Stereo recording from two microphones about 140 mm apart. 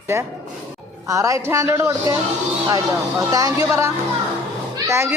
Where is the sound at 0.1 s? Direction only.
20° right (ahead or behind).